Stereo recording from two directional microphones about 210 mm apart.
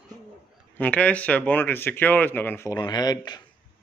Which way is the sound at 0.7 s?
5° left (ahead or behind).